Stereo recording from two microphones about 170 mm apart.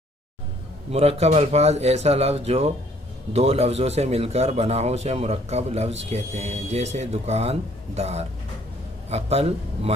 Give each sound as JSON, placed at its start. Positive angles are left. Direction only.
{"t": 0.9, "sound": "speech", "side_deg": -35}